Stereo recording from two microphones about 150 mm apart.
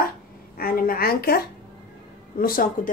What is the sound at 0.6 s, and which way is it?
Speech, 80° left.